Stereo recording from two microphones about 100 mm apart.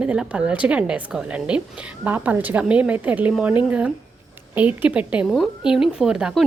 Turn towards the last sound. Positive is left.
turn(degrees=-10)  # may be behind; listen again after turning